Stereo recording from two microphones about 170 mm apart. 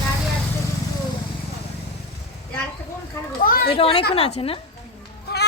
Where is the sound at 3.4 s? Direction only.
55° left (ahead or behind).